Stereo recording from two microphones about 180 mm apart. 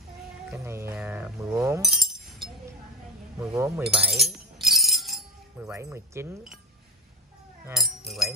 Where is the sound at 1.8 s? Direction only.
Centre (ahead or behind).